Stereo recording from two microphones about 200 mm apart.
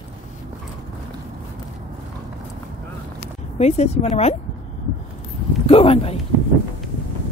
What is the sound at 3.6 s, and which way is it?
Speech, 30° left (ahead or behind).